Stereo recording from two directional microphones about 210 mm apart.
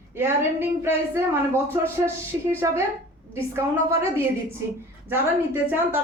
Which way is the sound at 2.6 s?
15° right (ahead or behind).